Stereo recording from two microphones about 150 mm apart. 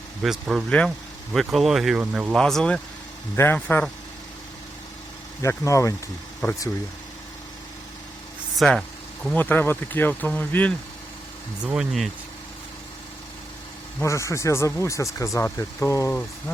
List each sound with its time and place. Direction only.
0.2 s speech: 5° right (ahead or behind)
2.3 s speech: 5° left (ahead or behind)
3.3 s speech: 15° left (ahead or behind)
5.4 s speech: 20° left (ahead or behind)
8.5 s speech: 5° left (ahead or behind)
11.6 s speech: 5° right (ahead or behind)
14.0 s speech: 20° left (ahead or behind)